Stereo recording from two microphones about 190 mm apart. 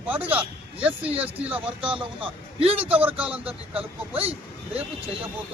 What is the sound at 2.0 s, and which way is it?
A man's voice, 30° right (ahead or behind).